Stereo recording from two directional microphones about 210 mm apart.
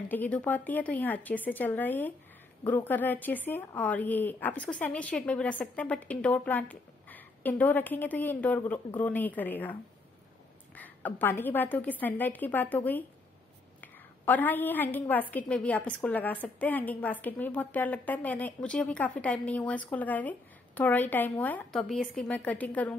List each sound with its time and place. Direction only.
0.1 s a woman's voice: 10° left (ahead or behind)